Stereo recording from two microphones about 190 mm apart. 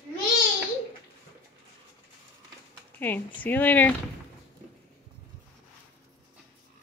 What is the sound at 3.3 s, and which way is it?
Speech, 10° left (ahead or behind).